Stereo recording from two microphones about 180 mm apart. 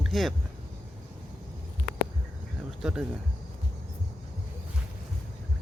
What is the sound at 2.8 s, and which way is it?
Speech, 5° right (ahead or behind).